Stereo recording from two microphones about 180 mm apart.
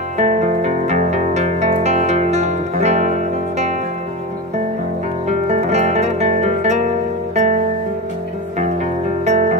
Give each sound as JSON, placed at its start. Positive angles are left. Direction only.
{"t": 0.2, "sound": "music", "side_deg": -40}
{"t": 5.3, "sound": "music", "side_deg": -40}
{"t": 9.2, "sound": "music", "side_deg": -40}